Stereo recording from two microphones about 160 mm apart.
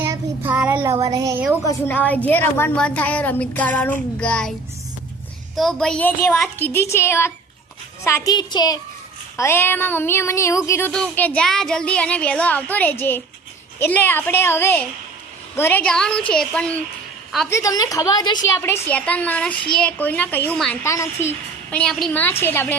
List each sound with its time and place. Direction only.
0.0 s child singing: 15° right (ahead or behind)
0.5 s a sound: 5° right (ahead or behind)
0.9 s music: 20° right (ahead or behind)
1.6 s a woman's voice: 10° left (ahead or behind)
5.5 s a woman's voice: centre (ahead or behind); by 8.8 s 25° left (ahead or behind)
9.4 s a woman's voice: 15° left (ahead or behind)
17.5 s a woman's voice: 20° left (ahead or behind); by 22.2 s 5° left (ahead or behind)
22.2 s a woman's voice: 15° left (ahead or behind)